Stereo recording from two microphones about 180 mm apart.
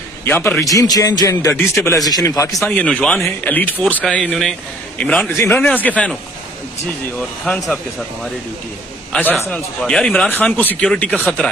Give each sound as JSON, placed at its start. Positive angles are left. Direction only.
{"t": 0.2, "sound": "speech", "side_deg": 10}
{"t": 0.7, "sound": "a man's voice", "side_deg": 20}
{"t": 7.2, "sound": "speech", "side_deg": 5}